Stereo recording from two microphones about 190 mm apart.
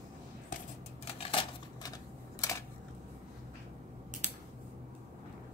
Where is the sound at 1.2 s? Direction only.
25° left (ahead or behind).